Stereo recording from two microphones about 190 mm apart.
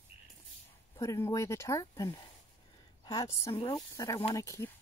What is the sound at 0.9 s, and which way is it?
A woman's voice, 15° left (ahead or behind).